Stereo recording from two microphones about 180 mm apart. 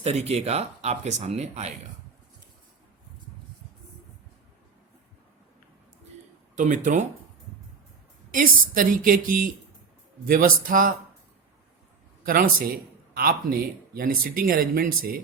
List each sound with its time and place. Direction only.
0.0 s speech: 35° right (ahead or behind)
6.6 s a man's voice: 45° right (ahead or behind)
8.3 s a man's voice: 50° right (ahead or behind)
12.2 s a man's voice: 50° right (ahead or behind)